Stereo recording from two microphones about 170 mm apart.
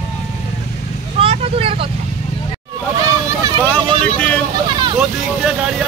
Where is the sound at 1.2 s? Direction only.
35° right (ahead or behind).